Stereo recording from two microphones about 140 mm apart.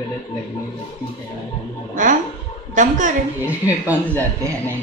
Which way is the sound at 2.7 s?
65° right (ahead or behind).